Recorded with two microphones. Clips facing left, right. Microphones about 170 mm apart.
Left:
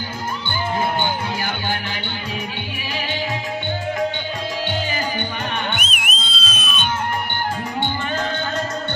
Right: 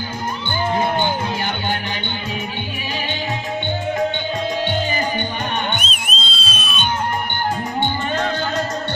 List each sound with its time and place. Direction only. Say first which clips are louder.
5.7 s music: right 1 dB; 30° right (ahead or behind)